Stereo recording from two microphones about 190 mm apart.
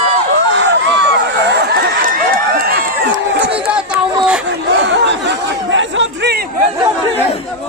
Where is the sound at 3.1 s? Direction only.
70° right (ahead or behind).